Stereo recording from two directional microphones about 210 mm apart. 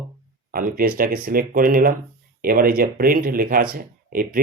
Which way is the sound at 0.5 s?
45° right (ahead or behind).